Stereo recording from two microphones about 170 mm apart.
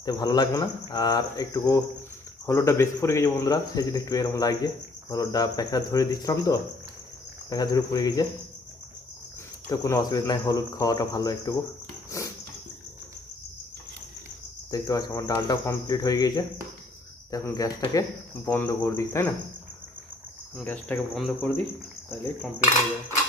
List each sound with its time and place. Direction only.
0.0 s speech: 25° left (ahead or behind)
9.6 s speech: 20° left (ahead or behind)
12.2 s a sound: 20° left (ahead or behind)
14.7 s speech: 20° left (ahead or behind)
20.6 s speech: 10° left (ahead or behind)